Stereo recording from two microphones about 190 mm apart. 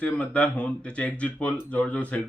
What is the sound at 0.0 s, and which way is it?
Speech, 5° left (ahead or behind).